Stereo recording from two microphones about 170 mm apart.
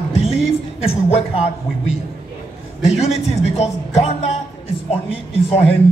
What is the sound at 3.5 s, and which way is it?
Speech, 40° left (ahead or behind).